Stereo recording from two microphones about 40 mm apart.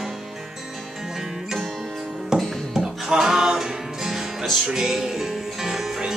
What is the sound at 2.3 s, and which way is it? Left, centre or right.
Music, centre.